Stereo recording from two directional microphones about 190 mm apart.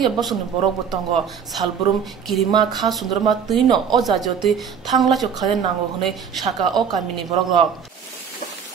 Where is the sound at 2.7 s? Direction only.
Centre (ahead or behind).